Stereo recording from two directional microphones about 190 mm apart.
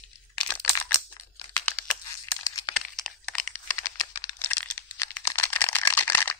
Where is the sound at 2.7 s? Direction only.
5° left (ahead or behind).